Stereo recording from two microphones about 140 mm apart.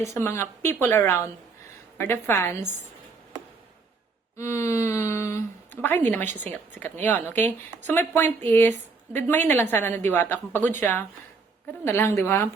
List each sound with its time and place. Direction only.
0.0 s speech: 20° left (ahead or behind)
4.4 s speech: 20° left (ahead or behind)